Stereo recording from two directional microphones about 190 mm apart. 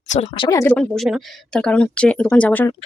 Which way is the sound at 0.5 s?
10° left (ahead or behind).